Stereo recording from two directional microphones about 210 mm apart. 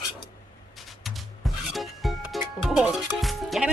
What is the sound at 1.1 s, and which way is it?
Music, centre (ahead or behind).